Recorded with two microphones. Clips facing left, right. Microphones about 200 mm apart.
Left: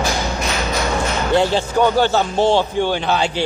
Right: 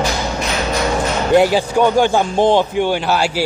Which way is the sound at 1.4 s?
15° right (ahead or behind).